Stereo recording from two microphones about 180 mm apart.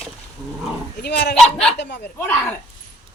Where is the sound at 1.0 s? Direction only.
65° left (ahead or behind).